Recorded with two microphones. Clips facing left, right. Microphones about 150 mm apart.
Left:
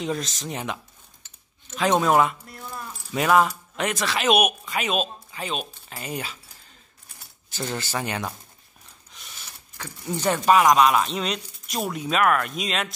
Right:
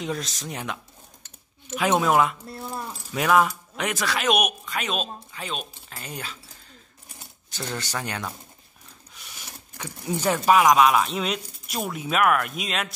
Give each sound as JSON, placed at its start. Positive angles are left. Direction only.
{"t": 0.0, "sound": "speech", "side_deg": 0}
{"t": 1.8, "sound": "speech", "side_deg": -5}
{"t": 2.4, "sound": "keys jangling", "side_deg": -30}
{"t": 3.1, "sound": "speech", "side_deg": 5}
{"t": 7.5, "sound": "speech", "side_deg": 5}
{"t": 9.1, "sound": "speech", "side_deg": -15}